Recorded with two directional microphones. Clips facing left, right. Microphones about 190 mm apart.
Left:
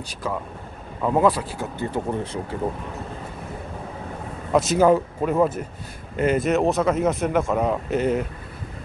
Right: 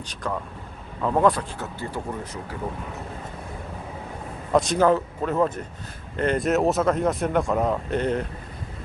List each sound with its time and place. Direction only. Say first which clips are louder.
0.1 s a man's voice: left 1 dB; 5° left (ahead or behind)
1.8 s speech: left 7 dB; 20° left (ahead or behind)
4.5 s a man's voice: left 2 dB; 5° left (ahead or behind)